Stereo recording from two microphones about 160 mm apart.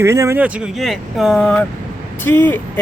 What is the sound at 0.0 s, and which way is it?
Speech, 15° right (ahead or behind).